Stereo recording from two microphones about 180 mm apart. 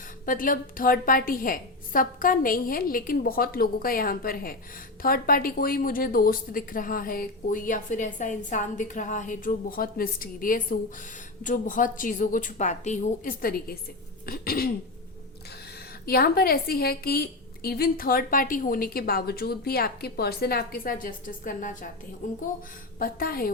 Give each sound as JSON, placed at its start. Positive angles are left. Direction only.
{"t": 0.3, "sound": "a woman's voice", "side_deg": 50}
{"t": 16.0, "sound": "a woman's voice", "side_deg": 55}
{"t": 23.0, "sound": "a woman's voice", "side_deg": 55}